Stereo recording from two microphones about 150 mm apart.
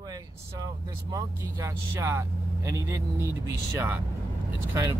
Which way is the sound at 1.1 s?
20° right (ahead or behind).